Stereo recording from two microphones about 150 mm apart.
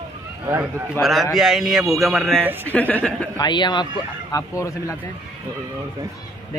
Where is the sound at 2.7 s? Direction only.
10° left (ahead or behind).